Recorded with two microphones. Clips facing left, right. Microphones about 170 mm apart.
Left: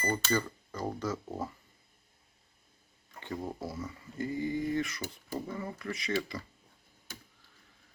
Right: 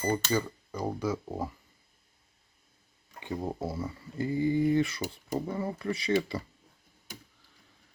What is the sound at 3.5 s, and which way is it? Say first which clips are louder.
Speech: right 5 dB; 25° right (ahead or behind).